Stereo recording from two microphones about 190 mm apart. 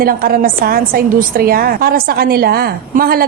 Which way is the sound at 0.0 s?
50° right (ahead or behind).